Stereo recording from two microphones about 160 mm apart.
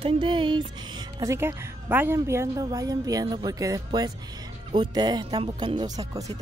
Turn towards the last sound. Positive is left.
turn(degrees=-25)  # may be behind; listen again after turning